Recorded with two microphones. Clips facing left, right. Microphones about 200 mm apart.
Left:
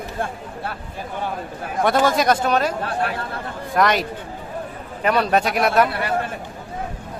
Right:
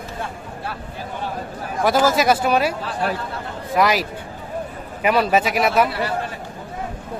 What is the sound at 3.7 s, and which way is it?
A man's voice, 5° right (ahead or behind).